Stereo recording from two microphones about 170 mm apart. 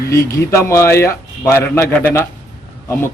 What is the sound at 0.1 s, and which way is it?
A man's voice, 15° left (ahead or behind).